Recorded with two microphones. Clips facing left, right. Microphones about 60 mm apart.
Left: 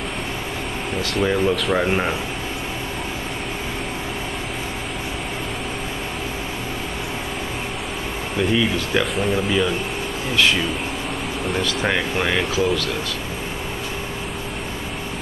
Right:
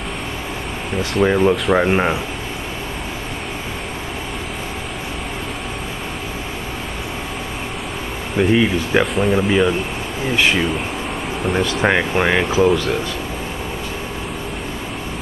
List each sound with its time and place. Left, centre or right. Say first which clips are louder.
1.2 s speech: right 5 dB; centre
8.4 s speech: right 5 dB; right
9.0 s speech: right 4 dB; centre
9.3 s speech: right 5 dB; right
11.8 s speech: right 6 dB; right